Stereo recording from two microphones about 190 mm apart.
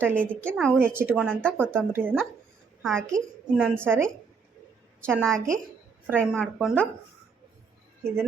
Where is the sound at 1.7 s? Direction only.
10° right (ahead or behind).